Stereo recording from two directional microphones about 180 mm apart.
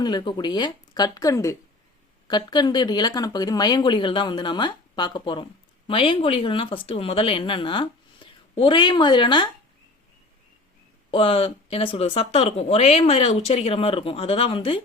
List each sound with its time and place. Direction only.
0.0 s speech: 25° left (ahead or behind)
11.1 s speech: 30° left (ahead or behind)